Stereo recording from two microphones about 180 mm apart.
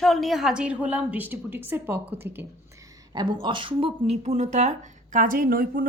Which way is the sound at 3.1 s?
25° right (ahead or behind).